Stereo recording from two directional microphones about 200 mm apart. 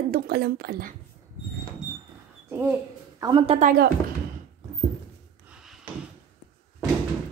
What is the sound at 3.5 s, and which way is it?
Speech, 45° right (ahead or behind).